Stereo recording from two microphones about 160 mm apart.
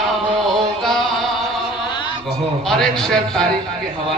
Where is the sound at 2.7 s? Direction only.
5° left (ahead or behind).